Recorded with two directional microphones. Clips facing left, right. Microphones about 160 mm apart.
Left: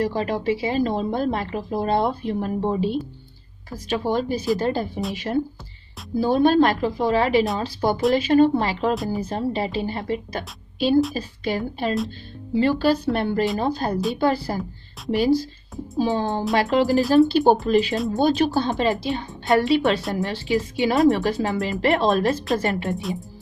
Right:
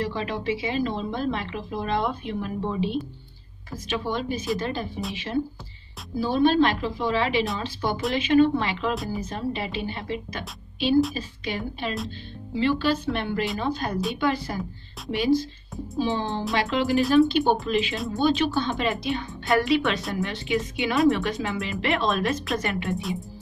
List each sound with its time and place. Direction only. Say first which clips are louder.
0.0 s a woman's voice: left 5 dB; 40° left (ahead or behind)
8.9 s speech: left 4 dB; centre (ahead or behind)
9.2 s a woman's voice: left 5 dB; 35° left (ahead or behind)
22.9 s speech: left 2 dB; centre (ahead or behind)